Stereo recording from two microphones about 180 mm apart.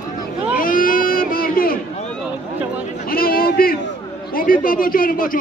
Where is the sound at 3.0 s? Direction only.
55° left (ahead or behind).